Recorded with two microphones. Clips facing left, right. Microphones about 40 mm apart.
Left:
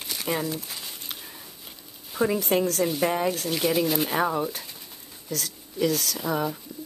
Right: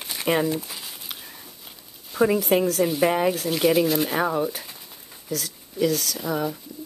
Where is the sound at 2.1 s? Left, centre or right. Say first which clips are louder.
Right 4 dB; centre.